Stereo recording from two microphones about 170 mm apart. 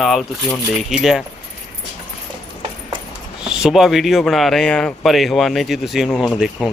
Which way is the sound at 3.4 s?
5° right (ahead or behind).